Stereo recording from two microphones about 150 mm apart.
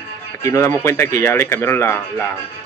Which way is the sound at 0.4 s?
20° left (ahead or behind).